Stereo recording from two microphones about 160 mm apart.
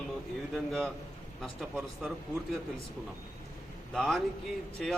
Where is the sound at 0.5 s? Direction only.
5° left (ahead or behind).